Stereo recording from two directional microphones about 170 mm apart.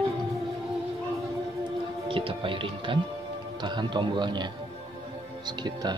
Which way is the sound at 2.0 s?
30° right (ahead or behind).